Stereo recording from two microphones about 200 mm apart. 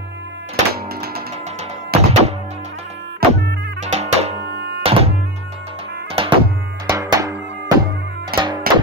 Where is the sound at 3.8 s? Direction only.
35° right (ahead or behind).